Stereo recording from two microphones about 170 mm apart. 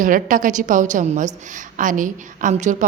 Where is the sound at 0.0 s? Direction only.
50° right (ahead or behind).